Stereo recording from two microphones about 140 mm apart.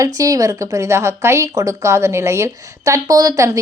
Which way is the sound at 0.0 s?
25° right (ahead or behind).